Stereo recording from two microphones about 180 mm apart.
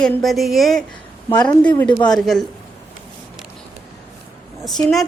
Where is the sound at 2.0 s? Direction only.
Centre (ahead or behind).